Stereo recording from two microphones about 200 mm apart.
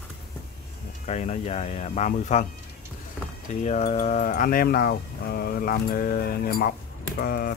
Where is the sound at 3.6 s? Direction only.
35° left (ahead or behind).